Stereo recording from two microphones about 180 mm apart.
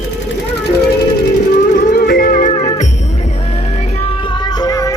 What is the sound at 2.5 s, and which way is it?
Music, 35° left (ahead or behind).